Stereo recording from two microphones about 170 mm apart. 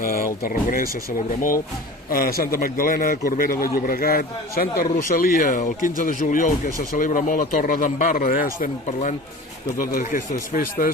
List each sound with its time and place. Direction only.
0.0 s vehicle: 60° left (ahead or behind)
0.4 s a man's voice: 55° left (ahead or behind)
2.0 s a man's voice: 60° left (ahead or behind)
8.9 s speech: 40° left (ahead or behind)
9.7 s a man's voice: 55° left (ahead or behind)